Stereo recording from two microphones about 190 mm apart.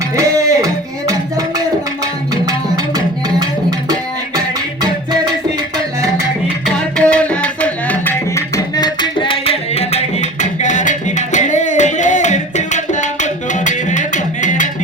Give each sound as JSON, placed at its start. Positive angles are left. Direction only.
{"t": 0.2, "sound": "music", "side_deg": -15}
{"t": 6.9, "sound": "tabla", "side_deg": 5}